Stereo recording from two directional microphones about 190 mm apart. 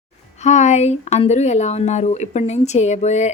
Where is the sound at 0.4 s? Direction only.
40° left (ahead or behind).